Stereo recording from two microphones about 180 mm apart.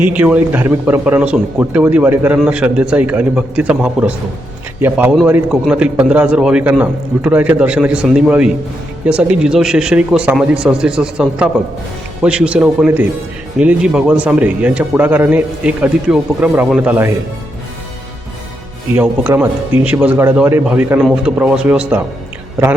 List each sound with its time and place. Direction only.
0.0 s speech: 10° right (ahead or behind)
18.9 s speech: 10° right (ahead or behind)